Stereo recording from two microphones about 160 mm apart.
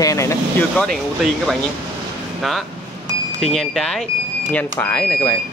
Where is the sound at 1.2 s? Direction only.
Centre (ahead or behind).